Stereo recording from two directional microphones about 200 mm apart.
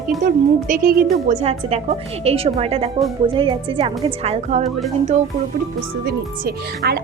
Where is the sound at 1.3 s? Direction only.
35° right (ahead or behind).